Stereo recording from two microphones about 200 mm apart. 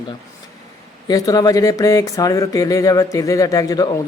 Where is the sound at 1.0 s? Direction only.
20° left (ahead or behind).